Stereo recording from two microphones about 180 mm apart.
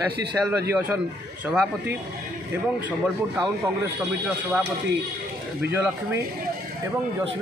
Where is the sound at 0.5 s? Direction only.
10° right (ahead or behind).